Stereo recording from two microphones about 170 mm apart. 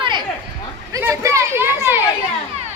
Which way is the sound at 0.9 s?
15° right (ahead or behind).